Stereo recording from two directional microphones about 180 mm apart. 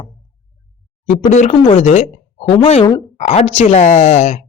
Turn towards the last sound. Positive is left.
turn(degrees=40)  # may be behind; listen again after turning